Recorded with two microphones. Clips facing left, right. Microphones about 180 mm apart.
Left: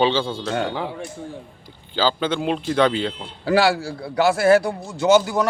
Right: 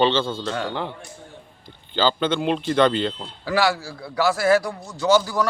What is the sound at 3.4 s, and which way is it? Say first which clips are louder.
A man's voice: left 4 dB; 30° left (ahead or behind).